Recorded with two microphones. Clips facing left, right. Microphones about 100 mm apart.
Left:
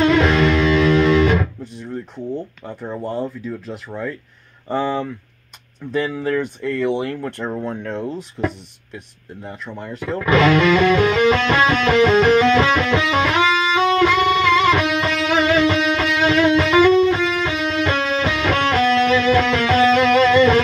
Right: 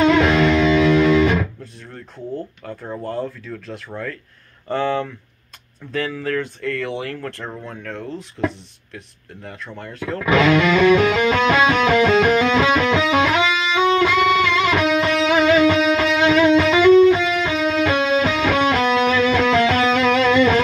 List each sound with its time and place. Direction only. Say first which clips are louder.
0.0 s music: even; 10° right (ahead or behind)
2.8 s speech: left 2 dB; 5° left (ahead or behind)
10.2 s music: left 1 dB; 10° right (ahead or behind)
14.6 s music: even; 10° right (ahead or behind)